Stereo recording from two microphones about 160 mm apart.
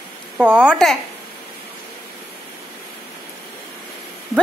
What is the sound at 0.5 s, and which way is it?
Speech, 5° left (ahead or behind).